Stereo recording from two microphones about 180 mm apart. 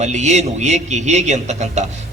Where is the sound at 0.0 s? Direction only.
40° right (ahead or behind).